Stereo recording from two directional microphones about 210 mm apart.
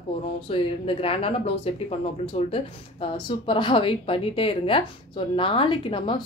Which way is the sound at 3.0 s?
25° left (ahead or behind).